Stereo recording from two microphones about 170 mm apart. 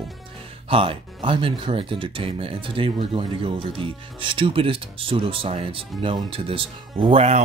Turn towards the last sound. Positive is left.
turn(degrees=-35)  # may be behind; listen again after turning